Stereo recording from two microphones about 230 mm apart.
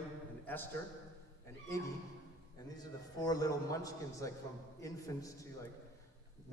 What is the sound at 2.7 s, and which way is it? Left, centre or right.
A man's voice, centre.